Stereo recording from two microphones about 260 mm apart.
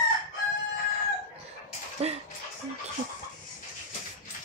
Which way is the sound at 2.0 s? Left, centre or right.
Right.